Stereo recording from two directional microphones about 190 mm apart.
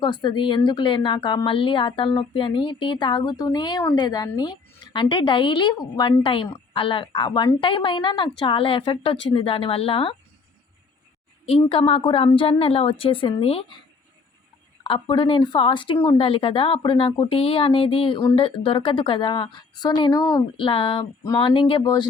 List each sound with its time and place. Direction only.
0.0 s speech: 25° left (ahead or behind)
11.7 s speech: 30° left (ahead or behind)
14.8 s speech: 25° left (ahead or behind)